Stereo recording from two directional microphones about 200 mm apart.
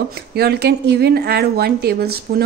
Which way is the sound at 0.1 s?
55° right (ahead or behind).